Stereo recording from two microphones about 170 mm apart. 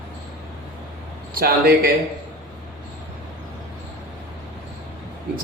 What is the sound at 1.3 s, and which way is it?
Speech, 60° right (ahead or behind).